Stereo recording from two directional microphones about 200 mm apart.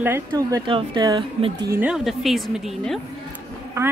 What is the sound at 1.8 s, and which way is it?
Speech, 5° right (ahead or behind).